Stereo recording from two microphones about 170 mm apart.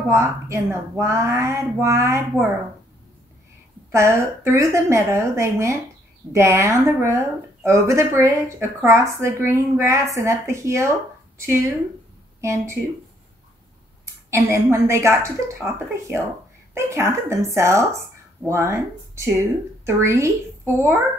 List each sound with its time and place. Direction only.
0.1 s speech: 15° right (ahead or behind)
3.9 s speech: 15° right (ahead or behind)
14.0 s a woman's voice: 15° right (ahead or behind)